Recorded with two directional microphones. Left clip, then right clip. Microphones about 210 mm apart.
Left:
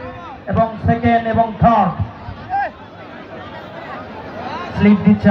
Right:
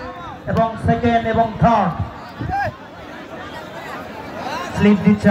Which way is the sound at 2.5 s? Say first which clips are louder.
Left 2 dB; 35° right (ahead or behind).